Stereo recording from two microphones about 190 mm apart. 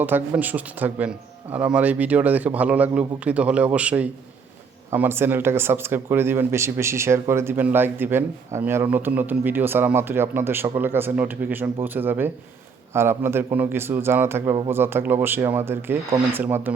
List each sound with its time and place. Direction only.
0.0 s speech: 10° right (ahead or behind)